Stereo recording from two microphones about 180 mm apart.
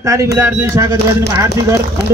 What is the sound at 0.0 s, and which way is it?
Speech, 15° right (ahead or behind).